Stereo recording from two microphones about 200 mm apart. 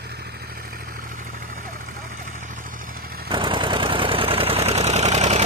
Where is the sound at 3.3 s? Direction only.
25° right (ahead or behind).